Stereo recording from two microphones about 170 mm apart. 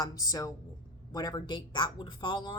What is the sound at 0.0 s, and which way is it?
Speech, 20° left (ahead or behind).